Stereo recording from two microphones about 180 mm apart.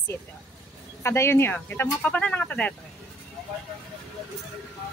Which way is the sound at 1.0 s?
15° left (ahead or behind).